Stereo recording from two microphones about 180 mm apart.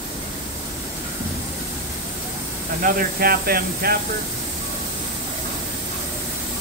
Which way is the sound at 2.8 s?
55° right (ahead or behind).